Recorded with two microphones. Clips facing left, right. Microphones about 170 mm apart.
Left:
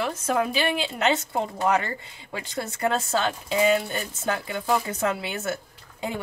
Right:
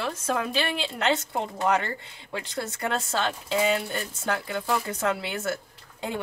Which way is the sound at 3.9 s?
15° left (ahead or behind).